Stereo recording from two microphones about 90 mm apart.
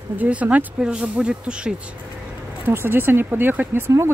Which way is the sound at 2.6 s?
25° right (ahead or behind).